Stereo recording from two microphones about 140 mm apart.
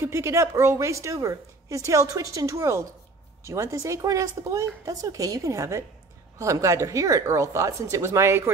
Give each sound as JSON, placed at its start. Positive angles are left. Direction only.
{"t": 0.0, "sound": "a woman's voice", "side_deg": -20}